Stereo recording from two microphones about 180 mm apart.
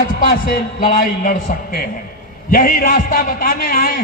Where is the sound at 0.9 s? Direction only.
50° left (ahead or behind).